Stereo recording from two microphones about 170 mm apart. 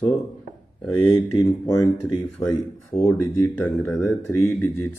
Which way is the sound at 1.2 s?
20° left (ahead or behind).